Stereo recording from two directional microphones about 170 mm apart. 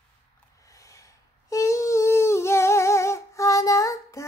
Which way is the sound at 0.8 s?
20° left (ahead or behind).